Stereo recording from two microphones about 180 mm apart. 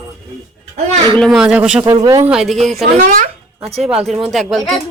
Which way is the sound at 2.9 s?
40° right (ahead or behind).